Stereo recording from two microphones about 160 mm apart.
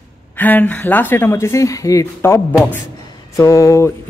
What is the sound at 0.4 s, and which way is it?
Speech, 10° left (ahead or behind).